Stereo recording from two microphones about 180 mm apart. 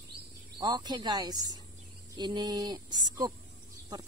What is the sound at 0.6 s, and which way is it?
Speech, 20° right (ahead or behind).